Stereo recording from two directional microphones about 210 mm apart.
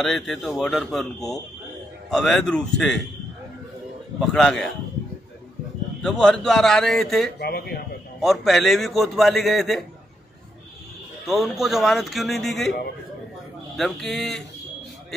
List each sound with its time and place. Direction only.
0.0 s a man's voice: centre (ahead or behind)
4.2 s a man's voice: centre (ahead or behind)
6.0 s a man's voice: 5° left (ahead or behind)
7.3 s speech: 50° left (ahead or behind)
8.2 s a man's voice: centre (ahead or behind)
11.2 s a man's voice: centre (ahead or behind)
13.7 s a man's voice: centre (ahead or behind)